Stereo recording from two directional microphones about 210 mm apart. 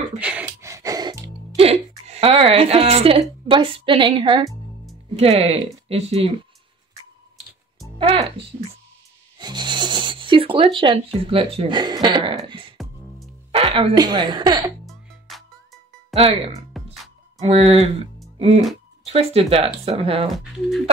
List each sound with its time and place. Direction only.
0.2 s music: 5° right (ahead or behind)
1.6 s speech: 30° right (ahead or behind)
8.0 s speech: 25° right (ahead or behind)
9.4 s zipper: 20° right (ahead or behind)
11.2 s speech: 25° right (ahead or behind)
14.9 s music: centre (ahead or behind)
16.8 s music: centre (ahead or behind)
17.4 s speech: 30° right (ahead or behind)
19.0 s speech: 30° right (ahead or behind)
20.5 s speech: 5° right (ahead or behind)